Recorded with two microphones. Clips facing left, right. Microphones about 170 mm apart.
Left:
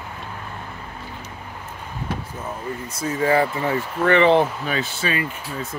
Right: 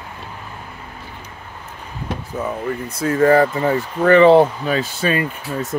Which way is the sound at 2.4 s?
65° right (ahead or behind).